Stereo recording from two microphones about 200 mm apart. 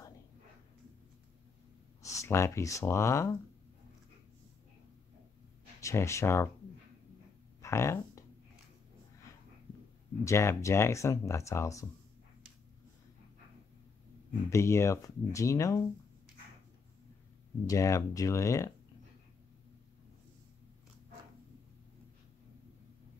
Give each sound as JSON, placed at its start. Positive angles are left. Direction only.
{"t": 2.0, "sound": "speech", "side_deg": 15}
{"t": 5.8, "sound": "speech", "side_deg": 15}
{"t": 7.6, "sound": "a sound", "side_deg": 15}
{"t": 10.2, "sound": "speech", "side_deg": 15}
{"t": 14.5, "sound": "speech", "side_deg": 15}
{"t": 17.6, "sound": "speech", "side_deg": 15}